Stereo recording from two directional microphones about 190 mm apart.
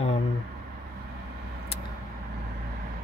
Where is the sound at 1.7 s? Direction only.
30° left (ahead or behind).